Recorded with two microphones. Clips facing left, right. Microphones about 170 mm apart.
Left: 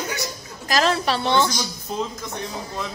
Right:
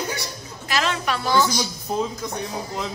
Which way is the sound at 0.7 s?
35° left (ahead or behind).